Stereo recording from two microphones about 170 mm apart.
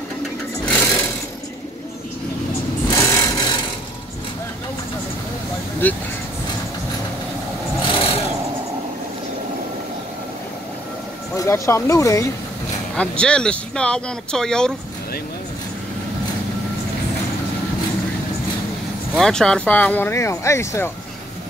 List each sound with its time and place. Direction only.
0.7 s sewing machine: 10° left (ahead or behind)
2.9 s sewing machine: 20° left (ahead or behind)
5.8 s speech: 10° left (ahead or behind)
7.9 s vehicle: 35° left (ahead or behind)
11.3 s speech: 15° left (ahead or behind)
12.9 s speech: 5° left (ahead or behind)
19.1 s speech: 5° left (ahead or behind)